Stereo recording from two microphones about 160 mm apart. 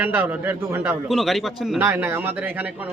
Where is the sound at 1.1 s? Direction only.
Centre (ahead or behind).